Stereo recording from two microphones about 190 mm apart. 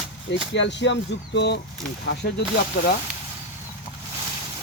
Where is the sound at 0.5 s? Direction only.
70° left (ahead or behind).